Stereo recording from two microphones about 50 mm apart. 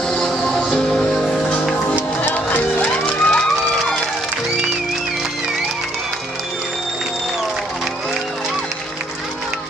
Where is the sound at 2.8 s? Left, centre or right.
Left.